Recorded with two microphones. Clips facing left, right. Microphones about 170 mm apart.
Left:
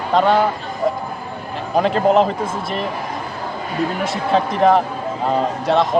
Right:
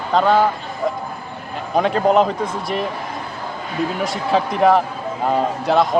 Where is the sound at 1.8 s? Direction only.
Centre (ahead or behind).